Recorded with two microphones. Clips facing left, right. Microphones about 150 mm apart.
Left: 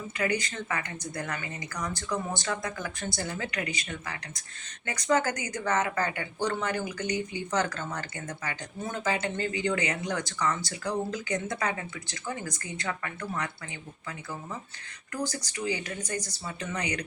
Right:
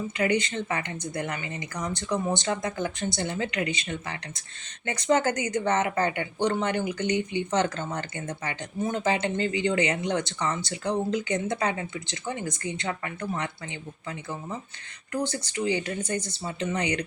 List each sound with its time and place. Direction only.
0.2 s speech: 25° right (ahead or behind)